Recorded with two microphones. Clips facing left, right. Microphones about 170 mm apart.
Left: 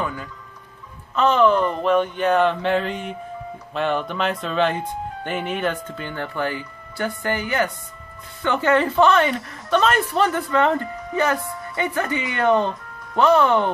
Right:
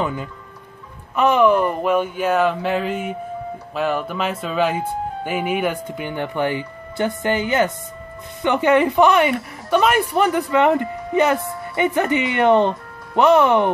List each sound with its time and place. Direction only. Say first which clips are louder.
0.0 s a woman's voice: right 4 dB; 20° right (ahead or behind)